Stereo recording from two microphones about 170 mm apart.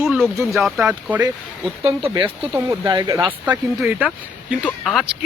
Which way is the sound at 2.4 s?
5° right (ahead or behind).